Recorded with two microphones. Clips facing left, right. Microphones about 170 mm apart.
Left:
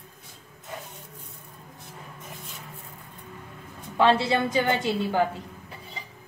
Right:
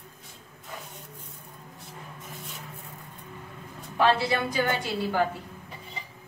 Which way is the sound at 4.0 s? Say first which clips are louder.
Left 2 dB; 25° left (ahead or behind).